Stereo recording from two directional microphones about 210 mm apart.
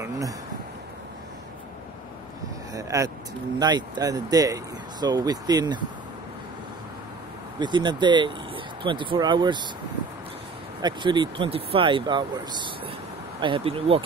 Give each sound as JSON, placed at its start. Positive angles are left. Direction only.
{"t": 2.7, "sound": "vehicle", "side_deg": -15}
{"t": 3.5, "sound": "speech", "side_deg": -20}
{"t": 7.5, "sound": "speech", "side_deg": -20}
{"t": 10.8, "sound": "speech", "side_deg": -20}
{"t": 13.4, "sound": "speech", "side_deg": -25}